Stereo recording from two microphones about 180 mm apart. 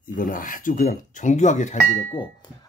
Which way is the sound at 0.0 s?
50° left (ahead or behind).